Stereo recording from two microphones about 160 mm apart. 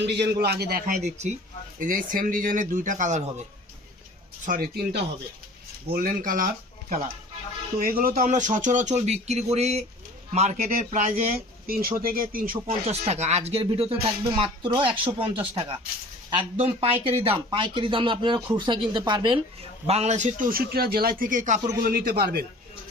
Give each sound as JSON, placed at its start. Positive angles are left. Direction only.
{"t": 0.0, "sound": "a man's voice", "side_deg": -90}
{"t": 0.9, "sound": "speech", "side_deg": -45}
{"t": 1.8, "sound": "a man's voice", "side_deg": -60}
{"t": 4.4, "sound": "a man's voice", "side_deg": -65}
{"t": 7.8, "sound": "a man's voice", "side_deg": -65}
{"t": 8.1, "sound": "speech", "side_deg": -50}
{"t": 10.7, "sound": "a man's voice", "side_deg": -55}
{"t": 11.6, "sound": "a man's voice", "side_deg": -70}
{"t": 12.6, "sound": "speech", "side_deg": -40}
{"t": 19.9, "sound": "a man's voice", "side_deg": -45}
{"t": 21.8, "sound": "speech", "side_deg": -70}